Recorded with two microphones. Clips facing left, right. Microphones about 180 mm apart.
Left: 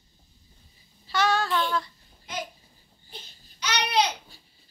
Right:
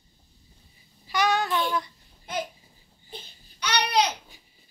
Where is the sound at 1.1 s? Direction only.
15° right (ahead or behind).